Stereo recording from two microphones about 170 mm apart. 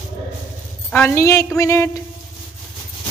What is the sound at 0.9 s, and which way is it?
Speech, 15° left (ahead or behind).